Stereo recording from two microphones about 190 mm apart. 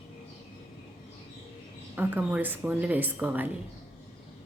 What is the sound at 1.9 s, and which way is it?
A woman's voice, 10° right (ahead or behind).